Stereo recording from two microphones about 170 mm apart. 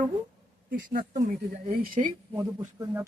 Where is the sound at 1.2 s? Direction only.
50° right (ahead or behind).